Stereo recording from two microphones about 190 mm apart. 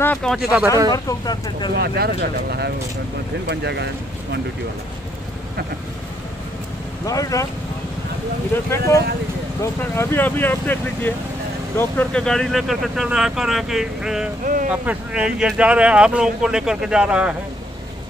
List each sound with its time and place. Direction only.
0.0 s speech: 5° left (ahead or behind)
0.9 s speech: 20° left (ahead or behind)
1.8 s speech: 55° right (ahead or behind)
7.1 s speech: 20° left (ahead or behind)
8.6 s speech: 15° left (ahead or behind); by 14.3 s 5° right (ahead or behind)
14.4 s speech: 45° right (ahead or behind)
14.7 s speech: 5° right (ahead or behind)